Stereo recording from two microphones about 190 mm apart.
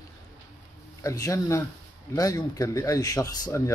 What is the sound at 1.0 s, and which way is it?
Speech, 15° left (ahead or behind).